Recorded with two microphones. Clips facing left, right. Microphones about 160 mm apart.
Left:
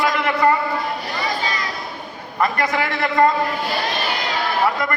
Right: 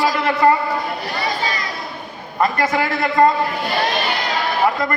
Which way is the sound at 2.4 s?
25° right (ahead or behind).